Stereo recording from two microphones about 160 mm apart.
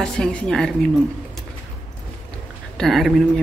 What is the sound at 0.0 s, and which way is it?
Speech, 5° left (ahead or behind).